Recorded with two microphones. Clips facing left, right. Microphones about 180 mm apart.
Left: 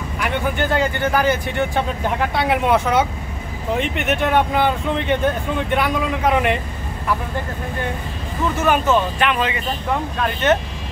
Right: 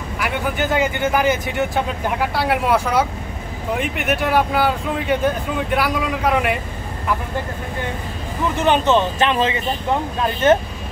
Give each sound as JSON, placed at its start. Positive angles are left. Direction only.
{"t": 0.2, "sound": "speech", "side_deg": -10}
{"t": 8.5, "sound": "speech", "side_deg": -25}